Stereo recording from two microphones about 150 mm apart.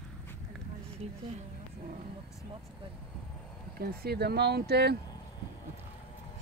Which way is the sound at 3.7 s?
90° right.